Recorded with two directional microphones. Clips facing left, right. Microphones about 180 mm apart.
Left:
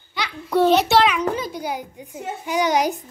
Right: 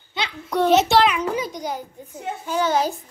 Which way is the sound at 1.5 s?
10° left (ahead or behind).